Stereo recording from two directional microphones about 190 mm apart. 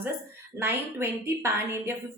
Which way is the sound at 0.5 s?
10° right (ahead or behind).